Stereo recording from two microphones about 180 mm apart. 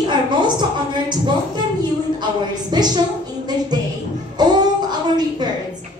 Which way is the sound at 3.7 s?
25° right (ahead or behind).